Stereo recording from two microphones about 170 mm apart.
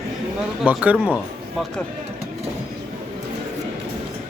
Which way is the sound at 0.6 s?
10° right (ahead or behind).